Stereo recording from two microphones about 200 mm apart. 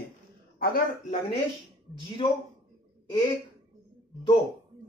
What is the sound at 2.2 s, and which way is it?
Speech, 25° left (ahead or behind).